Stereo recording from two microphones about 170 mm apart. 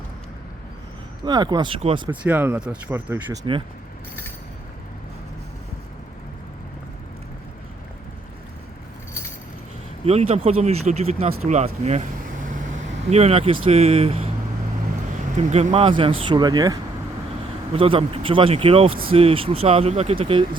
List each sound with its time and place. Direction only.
1.2 s speech: 25° right (ahead or behind)
2.2 s speech: 10° right (ahead or behind)
10.1 s speech: 35° right (ahead or behind)
15.4 s speech: 45° right (ahead or behind); by 16.7 s 25° right (ahead or behind)
17.7 s speech: 30° right (ahead or behind)